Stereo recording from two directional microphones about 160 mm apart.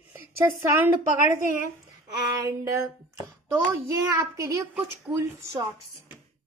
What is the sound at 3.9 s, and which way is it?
A child's voice, 20° right (ahead or behind).